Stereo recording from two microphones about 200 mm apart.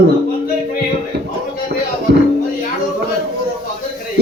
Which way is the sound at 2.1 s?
55° right (ahead or behind).